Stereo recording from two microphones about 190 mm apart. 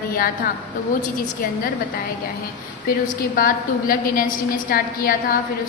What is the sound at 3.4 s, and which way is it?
A woman's voice, 45° left (ahead or behind).